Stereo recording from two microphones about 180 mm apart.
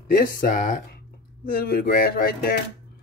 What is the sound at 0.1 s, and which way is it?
Speech, 50° left (ahead or behind).